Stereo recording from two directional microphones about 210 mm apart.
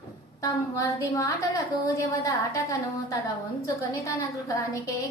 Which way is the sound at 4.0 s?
15° left (ahead or behind).